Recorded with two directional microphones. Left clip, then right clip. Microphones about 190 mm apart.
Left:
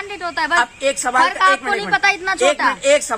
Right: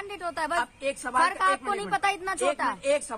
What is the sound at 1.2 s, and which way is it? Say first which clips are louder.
A woman's voice: left 9 dB; 55° right (ahead or behind).